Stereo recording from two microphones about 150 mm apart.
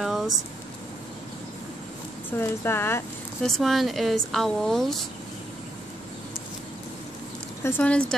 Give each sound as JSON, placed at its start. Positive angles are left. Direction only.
{"t": 0.0, "sound": "vehicle", "side_deg": 0}
{"t": 2.3, "sound": "speech", "side_deg": 15}
{"t": 3.4, "sound": "a woman's voice", "side_deg": 0}
{"t": 7.6, "sound": "speech", "side_deg": 10}